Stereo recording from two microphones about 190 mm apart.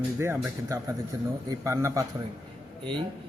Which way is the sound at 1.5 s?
15° right (ahead or behind).